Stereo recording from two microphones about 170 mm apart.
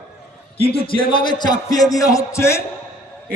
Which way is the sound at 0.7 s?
30° left (ahead or behind).